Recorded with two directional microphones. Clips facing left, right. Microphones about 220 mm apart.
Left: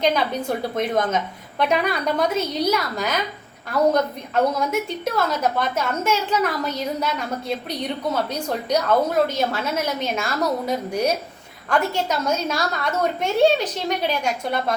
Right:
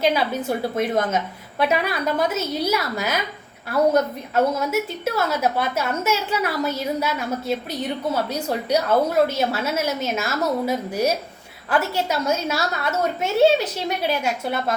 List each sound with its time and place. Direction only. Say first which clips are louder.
0.0 s a woman's voice: even; 5° right (ahead or behind)